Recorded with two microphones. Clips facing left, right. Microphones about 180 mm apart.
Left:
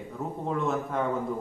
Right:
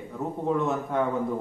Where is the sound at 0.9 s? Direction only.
Centre (ahead or behind).